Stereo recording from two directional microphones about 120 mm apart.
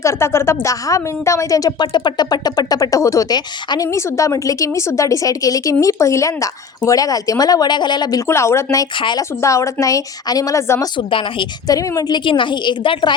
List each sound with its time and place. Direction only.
0.0 s a woman's voice: 25° left (ahead or behind)
8.3 s a woman's voice: 25° left (ahead or behind)
9.0 s speech: 40° left (ahead or behind)
9.4 s a woman's voice: 25° left (ahead or behind)
10.9 s speech: 45° left (ahead or behind)
11.7 s speech: 30° left (ahead or behind)